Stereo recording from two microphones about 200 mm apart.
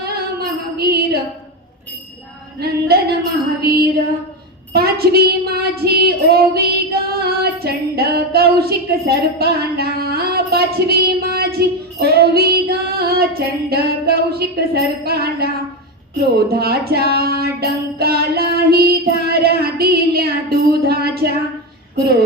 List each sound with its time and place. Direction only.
0.0 s female singing: 50° right (ahead or behind)
2.6 s child singing: 50° right (ahead or behind)